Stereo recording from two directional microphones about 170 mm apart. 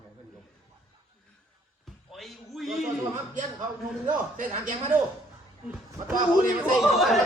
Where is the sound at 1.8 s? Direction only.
Centre (ahead or behind).